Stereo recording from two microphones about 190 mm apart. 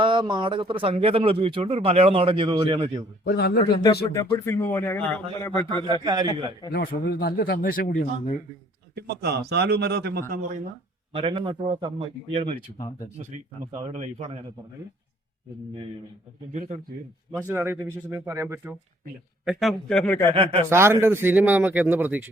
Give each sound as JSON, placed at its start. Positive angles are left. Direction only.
{"t": 0.0, "sound": "speech", "side_deg": -25}
{"t": 3.2, "sound": "speech", "side_deg": 60}
{"t": 4.1, "sound": "speech", "side_deg": 15}
{"t": 5.6, "sound": "speech", "side_deg": -25}
{"t": 6.7, "sound": "speech", "side_deg": 55}
{"t": 9.0, "sound": "a man's voice", "side_deg": -60}
{"t": 11.1, "sound": "speech", "side_deg": -30}
{"t": 12.7, "sound": "speech", "side_deg": 20}
{"t": 13.9, "sound": "a man's voice", "side_deg": -30}
{"t": 16.5, "sound": "a man's voice", "side_deg": -40}
{"t": 17.3, "sound": "speech", "side_deg": -10}
{"t": 19.5, "sound": "a man's voice", "side_deg": 0}
{"t": 20.3, "sound": "speech", "side_deg": -25}
{"t": 20.7, "sound": "speech", "side_deg": -15}